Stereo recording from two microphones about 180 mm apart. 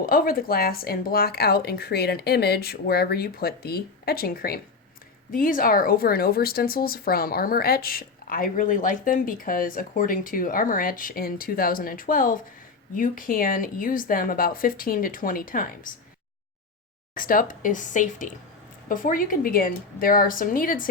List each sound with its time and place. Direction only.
0.0 s a woman's voice: 55° left (ahead or behind)
17.2 s speech: 50° left (ahead or behind)